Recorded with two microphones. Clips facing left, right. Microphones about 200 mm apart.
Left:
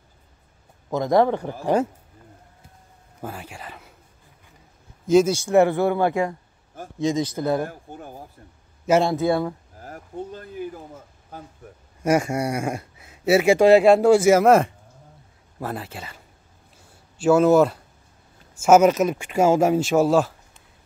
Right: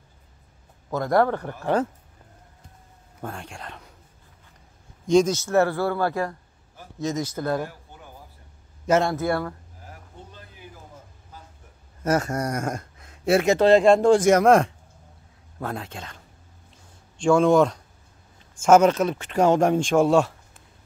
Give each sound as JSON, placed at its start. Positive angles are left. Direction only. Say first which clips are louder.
{"t": 0.8, "sound": "speech", "louder": "left 2 dB", "side_deg": 15}
{"t": 3.2, "sound": "speech", "louder": "left 1 dB", "side_deg": 5}
{"t": 5.0, "sound": "speech", "louder": "left 2 dB", "side_deg": 5}
{"t": 7.6, "sound": "speech", "louder": "left 5 dB", "side_deg": 50}
{"t": 8.8, "sound": "speech", "louder": "left 2 dB", "side_deg": 10}
{"t": 12.0, "sound": "speech", "louder": "left 3 dB", "side_deg": 10}
{"t": 17.2, "sound": "speech", "louder": "left 2 dB", "side_deg": 5}